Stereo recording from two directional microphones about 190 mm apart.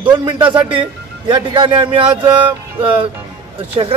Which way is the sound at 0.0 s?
25° right (ahead or behind).